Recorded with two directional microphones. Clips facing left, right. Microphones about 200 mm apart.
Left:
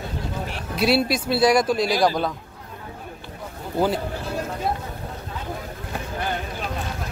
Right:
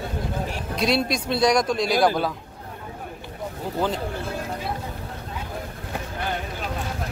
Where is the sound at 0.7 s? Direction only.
5° left (ahead or behind).